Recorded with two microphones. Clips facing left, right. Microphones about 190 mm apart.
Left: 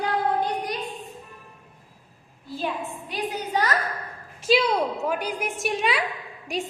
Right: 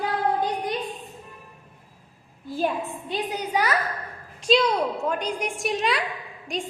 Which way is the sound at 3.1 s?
25° right (ahead or behind).